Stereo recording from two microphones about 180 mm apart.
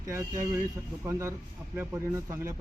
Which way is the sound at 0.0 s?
15° right (ahead or behind).